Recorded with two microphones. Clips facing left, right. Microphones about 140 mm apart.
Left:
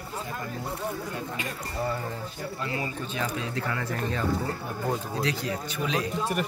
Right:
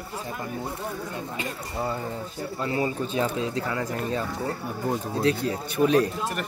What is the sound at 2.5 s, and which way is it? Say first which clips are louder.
Speech: right 7 dB; 30° right (ahead or behind).